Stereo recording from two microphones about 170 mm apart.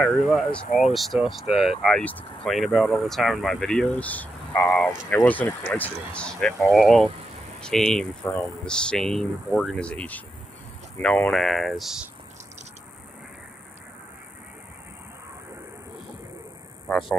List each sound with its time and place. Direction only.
0.3 s speech: centre (ahead or behind)
0.7 s speech: 45° left (ahead or behind)
0.9 s speech: centre (ahead or behind)